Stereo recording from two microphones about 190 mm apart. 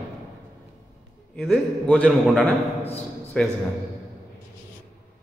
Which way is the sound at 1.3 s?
5° left (ahead or behind).